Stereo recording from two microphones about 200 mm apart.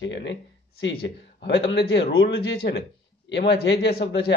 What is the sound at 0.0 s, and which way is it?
A man's voice, 60° left (ahead or behind).